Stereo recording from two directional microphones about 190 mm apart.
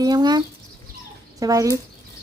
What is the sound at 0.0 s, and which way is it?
Bird, 20° right (ahead or behind).